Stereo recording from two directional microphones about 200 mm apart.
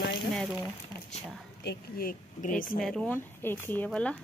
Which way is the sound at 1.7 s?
45° left (ahead or behind).